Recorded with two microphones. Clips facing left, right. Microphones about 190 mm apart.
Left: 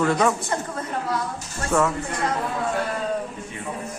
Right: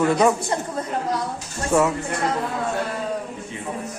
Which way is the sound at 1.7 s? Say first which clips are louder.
Right 2 dB; 10° right (ahead or behind).